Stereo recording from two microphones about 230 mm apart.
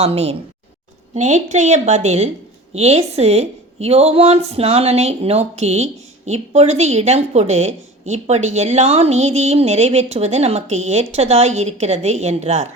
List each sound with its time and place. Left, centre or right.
0.0 s a woman's voice: right